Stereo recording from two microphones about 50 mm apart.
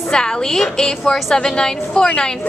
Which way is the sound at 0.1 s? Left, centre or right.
Centre.